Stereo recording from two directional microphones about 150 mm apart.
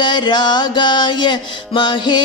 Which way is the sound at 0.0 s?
30° left (ahead or behind).